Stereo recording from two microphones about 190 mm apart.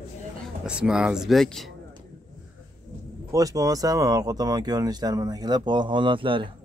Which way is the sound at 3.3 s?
20° right (ahead or behind).